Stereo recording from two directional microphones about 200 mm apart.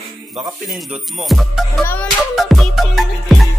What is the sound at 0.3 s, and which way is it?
Speech, 30° right (ahead or behind).